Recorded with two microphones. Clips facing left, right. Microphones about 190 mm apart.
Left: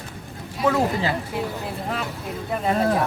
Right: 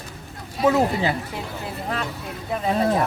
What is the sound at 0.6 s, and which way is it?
Speech, 20° right (ahead or behind).